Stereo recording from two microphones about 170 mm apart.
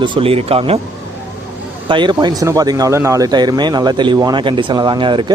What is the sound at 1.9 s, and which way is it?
Speech, 25° right (ahead or behind).